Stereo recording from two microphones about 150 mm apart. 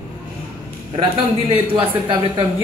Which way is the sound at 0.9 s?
35° right (ahead or behind).